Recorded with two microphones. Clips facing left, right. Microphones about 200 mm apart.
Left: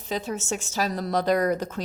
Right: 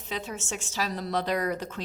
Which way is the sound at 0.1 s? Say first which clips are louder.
Left 6 dB; 40° left (ahead or behind).